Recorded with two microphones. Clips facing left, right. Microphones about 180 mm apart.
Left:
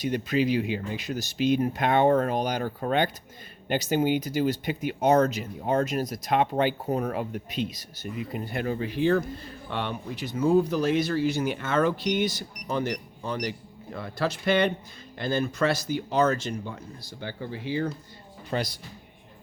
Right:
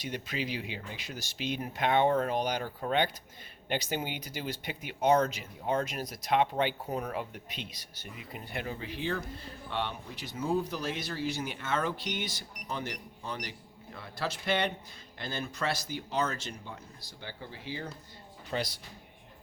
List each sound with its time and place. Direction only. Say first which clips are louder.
0.0 s speech: left 11 dB; 45° left (ahead or behind)
8.6 s speech: left 12 dB; 55° left (ahead or behind)
9.7 s speech: left 5 dB; 55° left (ahead or behind)
12.0 s speech: left 11 dB; 45° left (ahead or behind)
13.9 s speech: left 7 dB; 55° left (ahead or behind)
18.5 s speech: left 5 dB; 55° left (ahead or behind)